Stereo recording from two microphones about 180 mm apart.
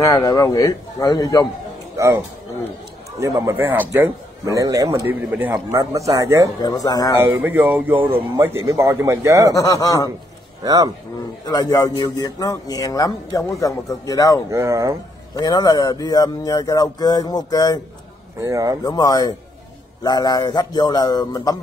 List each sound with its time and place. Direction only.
0.0 s a man's voice: 20° left (ahead or behind)
2.0 s a man's voice: 15° right (ahead or behind)
6.6 s a man's voice: 20° left (ahead or behind)
7.2 s a man's voice: 10° right (ahead or behind)
9.5 s a man's voice: 20° left (ahead or behind)
10.6 s speech: 20° right (ahead or behind)
11.4 s a man's voice: 20° left (ahead or behind)
14.5 s a man's voice: 15° right (ahead or behind)
15.3 s a man's voice: 20° left (ahead or behind)
18.4 s speech: 20° right (ahead or behind)
18.9 s a man's voice: 20° left (ahead or behind)